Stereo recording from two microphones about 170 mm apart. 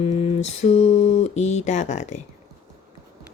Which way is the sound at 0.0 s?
35° left (ahead or behind).